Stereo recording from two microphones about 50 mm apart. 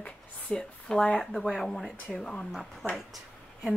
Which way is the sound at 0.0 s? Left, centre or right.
Centre.